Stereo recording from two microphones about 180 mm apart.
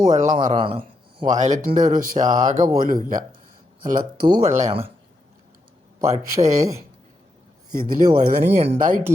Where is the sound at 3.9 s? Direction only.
25° right (ahead or behind).